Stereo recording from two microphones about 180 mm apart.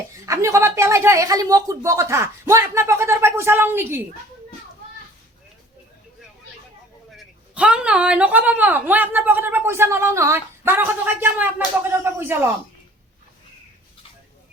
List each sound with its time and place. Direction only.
0.3 s a woman's voice: 15° right (ahead or behind)
7.2 s a woman's voice: 5° right (ahead or behind)